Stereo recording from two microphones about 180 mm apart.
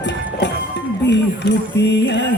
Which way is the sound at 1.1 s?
75° left (ahead or behind).